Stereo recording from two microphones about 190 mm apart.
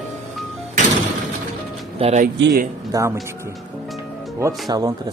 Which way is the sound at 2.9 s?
15° right (ahead or behind).